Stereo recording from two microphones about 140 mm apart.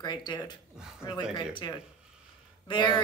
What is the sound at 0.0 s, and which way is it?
Speech, 30° left (ahead or behind).